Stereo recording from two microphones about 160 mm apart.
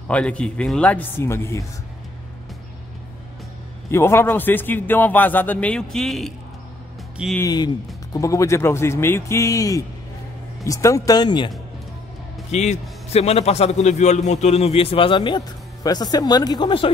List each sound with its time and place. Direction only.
0.1 s a man's voice: 5° left (ahead or behind)
3.9 s a man's voice: 15° left (ahead or behind)
7.3 s speech: 25° left (ahead or behind)
12.4 s a man's voice: 45° left (ahead or behind)